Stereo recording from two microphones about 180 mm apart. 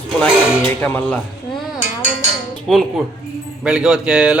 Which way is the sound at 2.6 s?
Centre (ahead or behind).